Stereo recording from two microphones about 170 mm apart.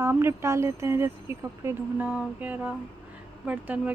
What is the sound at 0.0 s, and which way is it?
A woman's voice, 15° right (ahead or behind).